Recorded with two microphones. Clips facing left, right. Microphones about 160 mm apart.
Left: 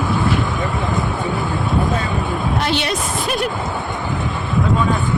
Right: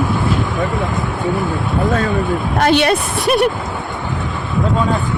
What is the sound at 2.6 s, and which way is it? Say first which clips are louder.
Speech: right 7 dB; 55° right (ahead or behind).